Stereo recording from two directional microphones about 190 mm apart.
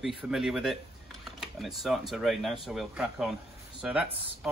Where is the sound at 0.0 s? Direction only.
Centre (ahead or behind).